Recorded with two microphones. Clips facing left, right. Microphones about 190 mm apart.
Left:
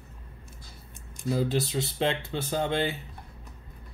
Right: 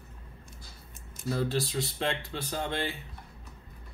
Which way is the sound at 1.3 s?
10° left (ahead or behind).